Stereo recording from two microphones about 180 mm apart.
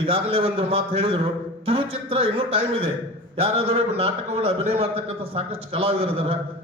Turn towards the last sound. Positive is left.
turn(degrees=-30)  # may be behind; listen again after turning